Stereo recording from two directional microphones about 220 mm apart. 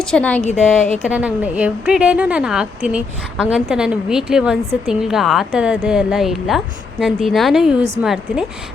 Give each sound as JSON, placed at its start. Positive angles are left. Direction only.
{"t": 0.0, "sound": "a woman's voice", "side_deg": 5}
{"t": 0.4, "sound": "a woman's voice", "side_deg": 35}
{"t": 1.0, "sound": "a woman's voice", "side_deg": -5}